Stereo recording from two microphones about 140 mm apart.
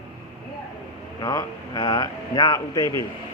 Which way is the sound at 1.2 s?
30° left (ahead or behind).